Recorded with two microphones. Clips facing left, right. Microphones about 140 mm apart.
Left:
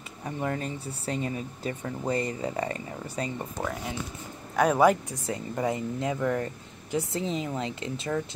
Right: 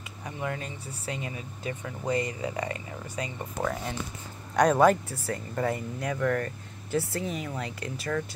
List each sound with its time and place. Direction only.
0.2 s speech: 40° left (ahead or behind)
3.6 s speech: 10° right (ahead or behind)
4.6 s a man's voice: 10° left (ahead or behind)
5.1 s speech: 20° left (ahead or behind)